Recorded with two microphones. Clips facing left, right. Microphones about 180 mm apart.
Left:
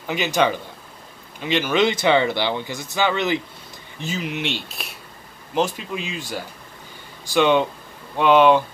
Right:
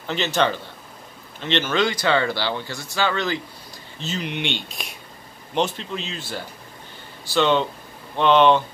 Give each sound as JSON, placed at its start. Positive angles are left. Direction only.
{"t": 0.0, "sound": "speech", "side_deg": 10}
{"t": 4.0, "sound": "speech", "side_deg": 5}